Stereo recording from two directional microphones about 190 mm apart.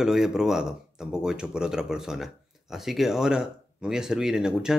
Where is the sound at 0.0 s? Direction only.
5° right (ahead or behind).